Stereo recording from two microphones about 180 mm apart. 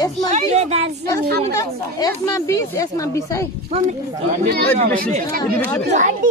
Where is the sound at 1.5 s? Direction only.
20° left (ahead or behind).